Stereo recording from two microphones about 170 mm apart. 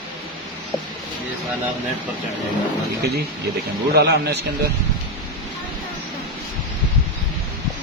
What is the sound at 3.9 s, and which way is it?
Speech, 75° right (ahead or behind).